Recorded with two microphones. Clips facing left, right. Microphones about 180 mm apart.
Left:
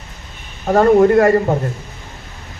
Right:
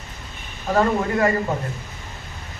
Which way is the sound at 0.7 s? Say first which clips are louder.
Left 10 dB; 50° left (ahead or behind).